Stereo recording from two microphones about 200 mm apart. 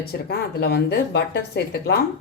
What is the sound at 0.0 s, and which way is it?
A woman's voice, 50° left (ahead or behind).